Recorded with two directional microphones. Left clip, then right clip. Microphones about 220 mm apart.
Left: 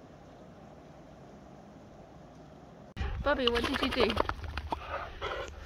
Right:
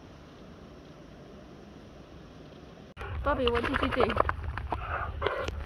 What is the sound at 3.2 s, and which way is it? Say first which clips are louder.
Bird: right 1 dB; 25° left (ahead or behind).